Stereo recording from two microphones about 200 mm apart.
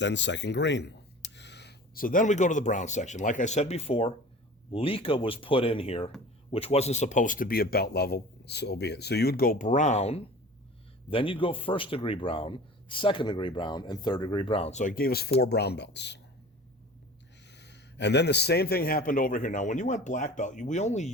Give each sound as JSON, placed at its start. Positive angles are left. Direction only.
{"t": 0.0, "sound": "a man's voice", "side_deg": 60}
{"t": 17.4, "sound": "speech", "side_deg": 60}